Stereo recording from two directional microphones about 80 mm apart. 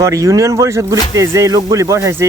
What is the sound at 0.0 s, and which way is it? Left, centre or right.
Speech, right.